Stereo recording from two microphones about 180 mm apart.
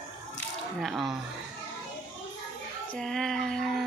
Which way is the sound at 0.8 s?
Centre (ahead or behind).